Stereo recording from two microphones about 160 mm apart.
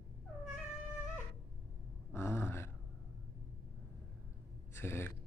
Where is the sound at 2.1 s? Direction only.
15° left (ahead or behind).